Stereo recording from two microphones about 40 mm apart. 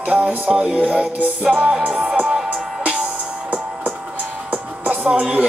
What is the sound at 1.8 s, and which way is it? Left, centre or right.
Music, right.